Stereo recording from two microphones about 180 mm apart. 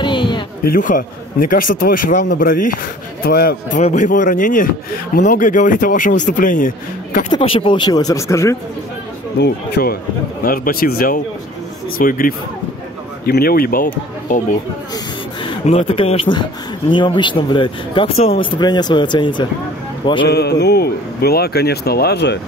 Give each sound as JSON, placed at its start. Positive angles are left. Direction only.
{"t": 0.0, "sound": "a sound", "side_deg": 25}
{"t": 0.7, "sound": "a man's voice", "side_deg": 50}
{"t": 3.8, "sound": "speech", "side_deg": 40}
{"t": 7.2, "sound": "speech", "side_deg": 30}
{"t": 9.4, "sound": "a man's voice", "side_deg": 60}
{"t": 15.4, "sound": "speech", "side_deg": 35}
{"t": 20.2, "sound": "a man's voice", "side_deg": 65}